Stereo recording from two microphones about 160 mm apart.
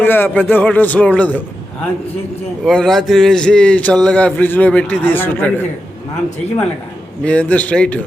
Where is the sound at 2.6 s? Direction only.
Centre (ahead or behind).